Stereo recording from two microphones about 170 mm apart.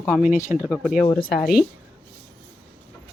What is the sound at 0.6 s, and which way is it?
Speech, 5° right (ahead or behind).